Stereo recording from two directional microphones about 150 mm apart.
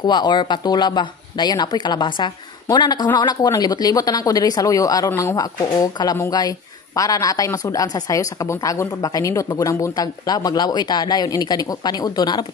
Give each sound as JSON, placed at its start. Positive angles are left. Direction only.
{"t": 0.0, "sound": "speech", "side_deg": 30}